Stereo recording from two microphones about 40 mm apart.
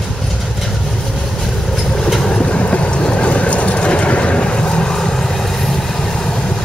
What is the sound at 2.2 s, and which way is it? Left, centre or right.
Vehicle, centre.